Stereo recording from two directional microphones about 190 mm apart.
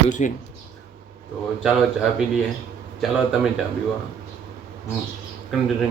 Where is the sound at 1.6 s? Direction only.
5° right (ahead or behind).